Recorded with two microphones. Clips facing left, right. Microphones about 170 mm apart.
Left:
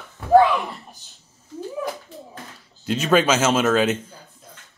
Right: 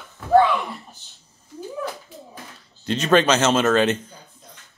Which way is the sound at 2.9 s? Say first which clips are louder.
Right 1 dB; 5° left (ahead or behind).